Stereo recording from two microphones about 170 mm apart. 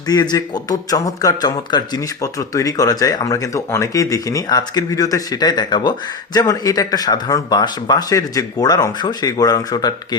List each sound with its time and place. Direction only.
0.1 s speech: 25° left (ahead or behind)